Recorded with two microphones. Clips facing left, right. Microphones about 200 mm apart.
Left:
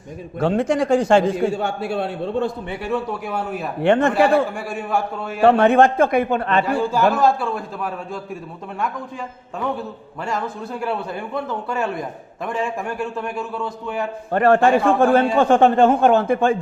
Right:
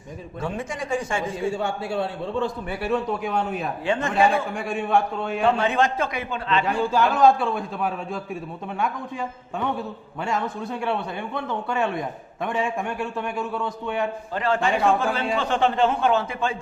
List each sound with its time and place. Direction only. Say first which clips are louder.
0.3 s a man's voice: left 11 dB; 70° left (ahead or behind)
3.2 s speech: even; 5° left (ahead or behind)
3.8 s a man's voice: left 11 dB; 65° left (ahead or behind)
4.5 s a man's voice: right 1 dB; 5° left (ahead or behind)
5.4 s a man's voice: left 8 dB; 60° left (ahead or behind)
6.7 s a man's voice: left 1 dB; 5° left (ahead or behind)
10.2 s a man's voice: left 1 dB; centre (ahead or behind)
14.3 s a man's voice: left 9 dB; 55° left (ahead or behind)